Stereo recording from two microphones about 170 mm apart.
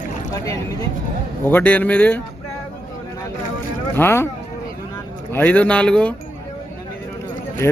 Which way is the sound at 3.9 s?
15° left (ahead or behind).